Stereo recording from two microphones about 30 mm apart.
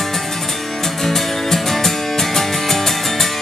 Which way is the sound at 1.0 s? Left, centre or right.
Centre.